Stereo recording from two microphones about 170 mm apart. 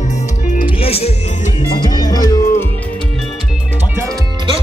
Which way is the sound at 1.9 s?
25° left (ahead or behind).